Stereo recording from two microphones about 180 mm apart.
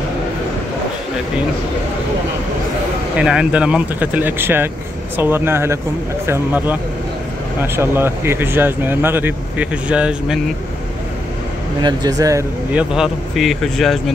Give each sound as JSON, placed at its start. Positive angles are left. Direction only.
{"t": 3.2, "sound": "speech", "side_deg": -5}
{"t": 11.8, "sound": "speech", "side_deg": -20}
{"t": 12.7, "sound": "speech", "side_deg": -5}